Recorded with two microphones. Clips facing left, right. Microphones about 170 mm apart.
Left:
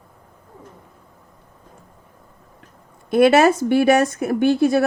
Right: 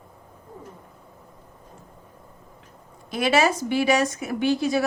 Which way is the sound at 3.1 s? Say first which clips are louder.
Left 8 dB; 55° left (ahead or behind).